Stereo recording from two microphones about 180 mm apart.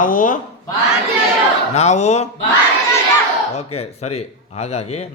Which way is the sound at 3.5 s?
35° left (ahead or behind).